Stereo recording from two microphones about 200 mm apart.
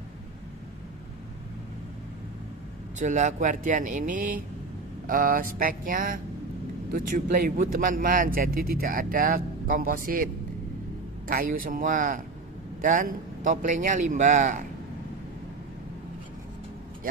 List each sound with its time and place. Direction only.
3.0 s a man's voice: 40° right (ahead or behind)